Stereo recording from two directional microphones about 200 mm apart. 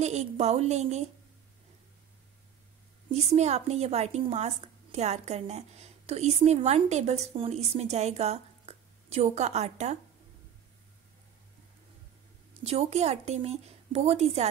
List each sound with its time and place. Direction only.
0.0 s a woman's voice: 35° right (ahead or behind)
3.1 s a woman's voice: 35° right (ahead or behind)
12.6 s a woman's voice: 30° right (ahead or behind)